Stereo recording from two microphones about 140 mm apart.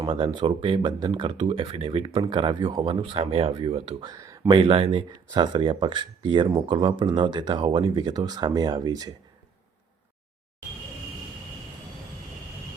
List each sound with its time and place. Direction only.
0.0 s speech: 35° right (ahead or behind)
4.1 s speech: 25° right (ahead or behind)